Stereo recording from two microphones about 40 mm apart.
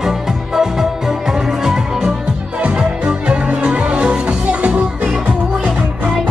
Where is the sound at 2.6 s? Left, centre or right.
Right.